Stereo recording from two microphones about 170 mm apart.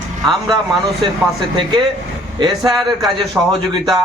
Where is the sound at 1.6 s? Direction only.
25° right (ahead or behind).